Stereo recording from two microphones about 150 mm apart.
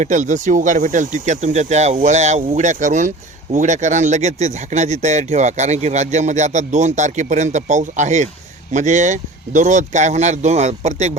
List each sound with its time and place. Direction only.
0.0 s speech: 55° right (ahead or behind)